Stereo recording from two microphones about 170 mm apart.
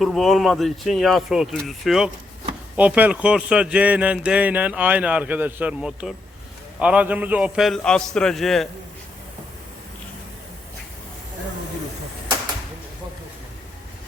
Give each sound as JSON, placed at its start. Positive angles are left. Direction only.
{"t": 0.0, "sound": "a man's voice", "side_deg": 0}